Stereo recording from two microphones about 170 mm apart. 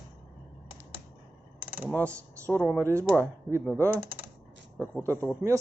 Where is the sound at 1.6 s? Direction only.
10° right (ahead or behind).